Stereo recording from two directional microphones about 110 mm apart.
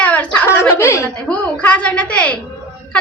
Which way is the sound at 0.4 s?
25° left (ahead or behind).